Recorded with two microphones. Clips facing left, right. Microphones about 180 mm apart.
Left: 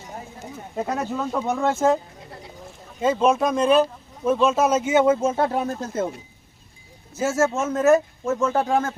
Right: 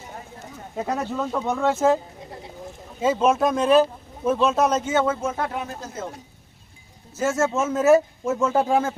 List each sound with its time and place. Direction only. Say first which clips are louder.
0.8 s speech: even; centre (ahead or behind)
3.0 s speech: even; 5° right (ahead or behind); by 5.1 s 10° left (ahead or behind)
5.2 s speech: left 5 dB; 30° left (ahead or behind)
5.8 s speech: left 7 dB; 55° left (ahead or behind)
7.2 s speech: left 1 dB; 5° left (ahead or behind)